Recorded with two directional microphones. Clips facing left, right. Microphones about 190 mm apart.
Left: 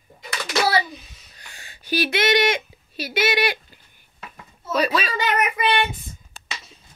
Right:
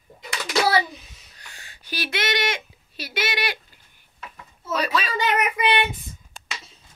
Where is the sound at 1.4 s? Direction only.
15° left (ahead or behind).